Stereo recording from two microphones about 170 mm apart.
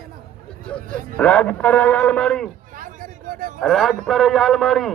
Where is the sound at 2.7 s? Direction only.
55° right (ahead or behind).